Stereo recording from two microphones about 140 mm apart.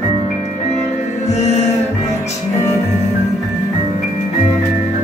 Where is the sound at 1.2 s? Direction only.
50° left (ahead or behind).